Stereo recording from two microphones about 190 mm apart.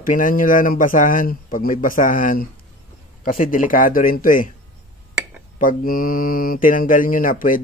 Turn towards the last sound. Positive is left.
turn(degrees=45)  # may be behind; listen again after turning